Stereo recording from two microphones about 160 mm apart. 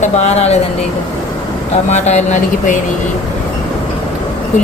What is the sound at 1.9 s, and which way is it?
Speech, 45° left (ahead or behind).